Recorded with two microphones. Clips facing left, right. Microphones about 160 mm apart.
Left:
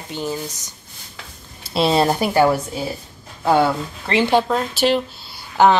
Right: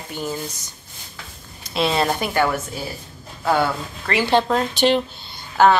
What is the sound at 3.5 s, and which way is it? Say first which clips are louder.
Speech: left 6 dB; 25° left (ahead or behind).